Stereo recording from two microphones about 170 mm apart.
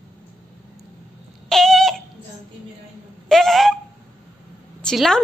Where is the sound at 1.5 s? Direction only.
Centre (ahead or behind).